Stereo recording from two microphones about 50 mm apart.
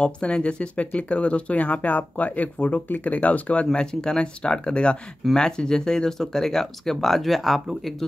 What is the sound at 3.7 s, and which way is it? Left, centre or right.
Speech, centre.